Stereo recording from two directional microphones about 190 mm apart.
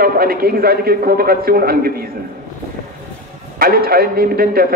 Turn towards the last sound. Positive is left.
turn(degrees=-50)  # may be behind; listen again after turning